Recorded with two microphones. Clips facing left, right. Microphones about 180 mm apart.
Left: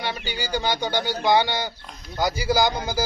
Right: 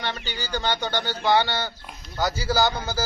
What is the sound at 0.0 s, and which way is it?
A man's voice, 10° left (ahead or behind).